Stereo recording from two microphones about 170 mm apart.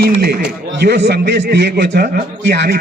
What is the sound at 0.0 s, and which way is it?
A man's voice, 65° right (ahead or behind).